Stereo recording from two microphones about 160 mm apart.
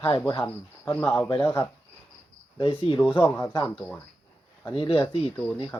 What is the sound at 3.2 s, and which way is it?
Speech, 15° left (ahead or behind).